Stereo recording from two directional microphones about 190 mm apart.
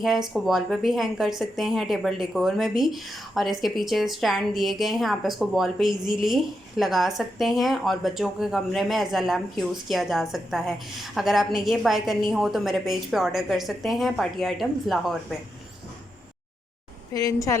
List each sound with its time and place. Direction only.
0.0 s a woman's voice: centre (ahead or behind)
17.1 s a woman's voice: 20° left (ahead or behind)